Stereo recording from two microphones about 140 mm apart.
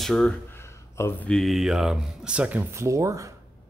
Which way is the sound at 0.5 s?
20° left (ahead or behind).